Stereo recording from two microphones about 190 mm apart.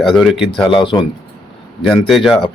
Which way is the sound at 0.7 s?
25° left (ahead or behind).